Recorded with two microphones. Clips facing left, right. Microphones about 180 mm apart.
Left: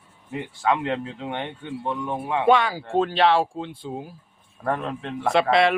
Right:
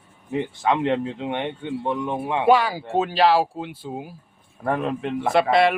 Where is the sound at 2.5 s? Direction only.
5° right (ahead or behind).